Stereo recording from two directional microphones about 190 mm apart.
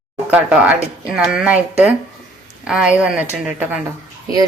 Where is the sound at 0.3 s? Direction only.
10° right (ahead or behind).